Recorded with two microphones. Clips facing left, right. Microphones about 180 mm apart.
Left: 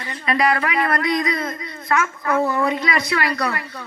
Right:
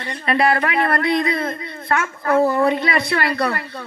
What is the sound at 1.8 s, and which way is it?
A woman's voice, 30° right (ahead or behind).